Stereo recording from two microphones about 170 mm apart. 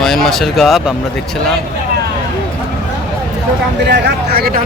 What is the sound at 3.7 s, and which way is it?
Speech, 85° right.